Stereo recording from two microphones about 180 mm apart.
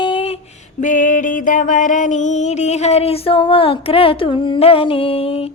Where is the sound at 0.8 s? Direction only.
45° left (ahead or behind).